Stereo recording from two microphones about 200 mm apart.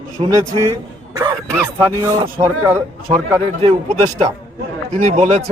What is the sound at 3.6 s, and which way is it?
Speech, 30° right (ahead or behind).